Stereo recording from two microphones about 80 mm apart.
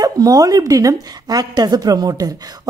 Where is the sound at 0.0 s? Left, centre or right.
Right.